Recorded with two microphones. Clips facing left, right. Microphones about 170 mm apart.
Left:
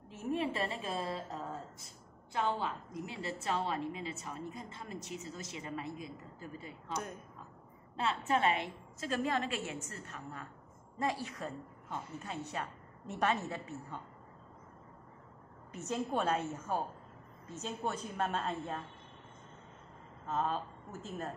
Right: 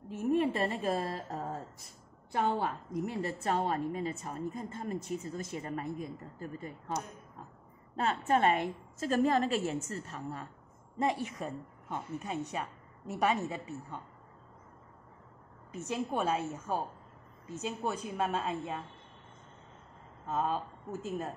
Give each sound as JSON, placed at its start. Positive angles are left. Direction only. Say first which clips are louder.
{"t": 0.1, "sound": "a woman's voice", "louder": "right 6 dB", "side_deg": -55}
{"t": 7.9, "sound": "a woman's voice", "louder": "right 3 dB", "side_deg": -45}
{"t": 11.0, "sound": "a woman's voice", "louder": "right 4 dB", "side_deg": -20}
{"t": 15.9, "sound": "a woman's voice", "louder": "right 1 dB", "side_deg": -10}
{"t": 20.3, "sound": "a woman's voice", "louder": "right 2 dB", "side_deg": -10}